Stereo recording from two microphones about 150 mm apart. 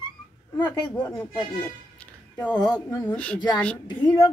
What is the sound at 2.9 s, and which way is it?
Speech, 10° left (ahead or behind).